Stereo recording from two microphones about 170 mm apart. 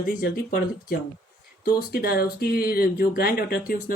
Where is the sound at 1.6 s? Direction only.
65° left (ahead or behind).